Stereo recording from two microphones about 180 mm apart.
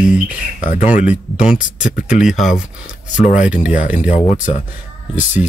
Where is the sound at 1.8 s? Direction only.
45° left (ahead or behind).